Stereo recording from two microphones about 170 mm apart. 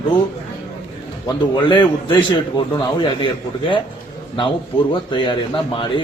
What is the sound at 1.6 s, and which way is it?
A man's voice, 25° left (ahead or behind).